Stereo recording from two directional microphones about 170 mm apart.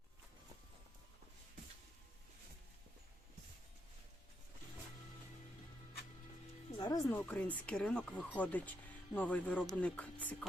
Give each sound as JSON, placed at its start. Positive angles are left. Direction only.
{"t": 6.7, "sound": "music", "side_deg": 25}
{"t": 7.1, "sound": "speech", "side_deg": 10}